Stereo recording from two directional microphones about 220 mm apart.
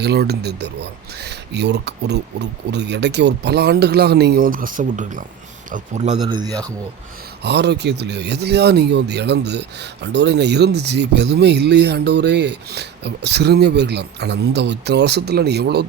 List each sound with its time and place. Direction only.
0.0 s speech: 50° right (ahead or behind); by 6.1 s 35° right (ahead or behind)
6.2 s a man's voice: 20° right (ahead or behind)
7.4 s speech: 50° right (ahead or behind)